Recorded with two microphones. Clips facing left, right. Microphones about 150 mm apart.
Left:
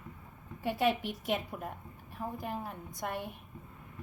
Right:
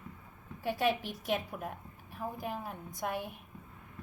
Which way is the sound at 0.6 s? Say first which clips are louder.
Left 1 dB; centre (ahead or behind).